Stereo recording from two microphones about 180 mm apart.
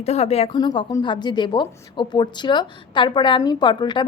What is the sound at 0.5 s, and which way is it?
A woman's voice, 25° left (ahead or behind).